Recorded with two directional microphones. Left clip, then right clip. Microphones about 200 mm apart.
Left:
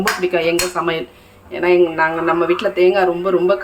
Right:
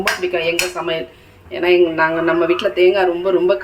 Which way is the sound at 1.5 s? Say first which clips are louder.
Even; 5° left (ahead or behind).